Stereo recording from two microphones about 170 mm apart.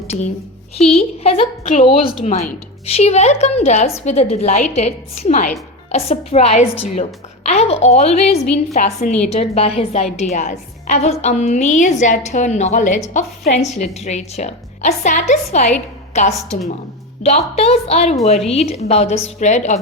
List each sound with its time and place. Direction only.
0.9 s a woman's voice: 35° left (ahead or behind)
2.2 s a woman's voice: 40° left (ahead or behind)
6.1 s a woman's voice: 40° left (ahead or behind)